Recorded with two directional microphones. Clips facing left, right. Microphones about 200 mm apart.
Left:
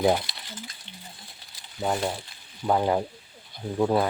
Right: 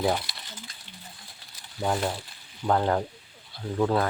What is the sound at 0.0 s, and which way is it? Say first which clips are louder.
Speech: left 4 dB; 20° left (ahead or behind).